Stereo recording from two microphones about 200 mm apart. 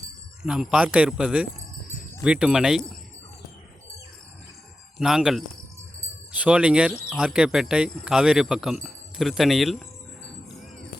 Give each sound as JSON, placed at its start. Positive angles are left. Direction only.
{"t": 0.4, "sound": "speech", "side_deg": -5}
{"t": 4.9, "sound": "speech", "side_deg": 0}